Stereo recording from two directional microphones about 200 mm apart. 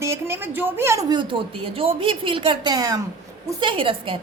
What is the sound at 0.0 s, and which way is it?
A woman's voice, 15° right (ahead or behind).